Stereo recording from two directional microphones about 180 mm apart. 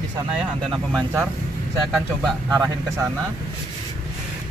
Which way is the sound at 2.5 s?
20° right (ahead or behind).